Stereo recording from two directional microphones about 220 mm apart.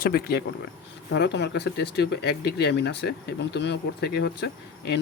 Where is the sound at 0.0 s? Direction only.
45° left (ahead or behind).